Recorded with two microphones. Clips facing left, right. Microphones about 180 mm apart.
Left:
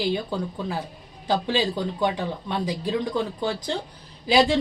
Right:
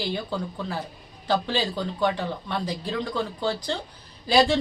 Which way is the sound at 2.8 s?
15° left (ahead or behind).